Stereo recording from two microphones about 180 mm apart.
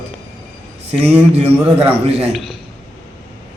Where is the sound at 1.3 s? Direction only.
35° right (ahead or behind).